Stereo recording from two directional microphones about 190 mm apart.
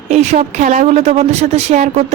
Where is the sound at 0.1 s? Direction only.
35° right (ahead or behind).